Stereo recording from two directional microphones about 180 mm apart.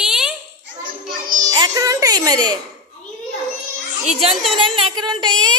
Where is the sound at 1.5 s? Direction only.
20° right (ahead or behind).